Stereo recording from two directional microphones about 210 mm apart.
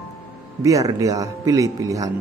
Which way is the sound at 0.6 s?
15° right (ahead or behind).